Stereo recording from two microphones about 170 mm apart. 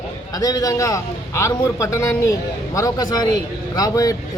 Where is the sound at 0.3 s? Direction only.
20° left (ahead or behind).